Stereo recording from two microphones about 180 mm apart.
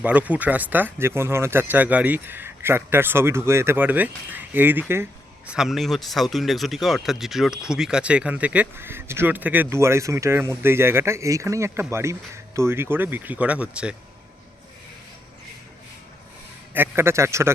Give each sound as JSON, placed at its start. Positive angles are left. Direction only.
{"t": 0.0, "sound": "speech", "side_deg": -10}
{"t": 16.7, "sound": "speech", "side_deg": -10}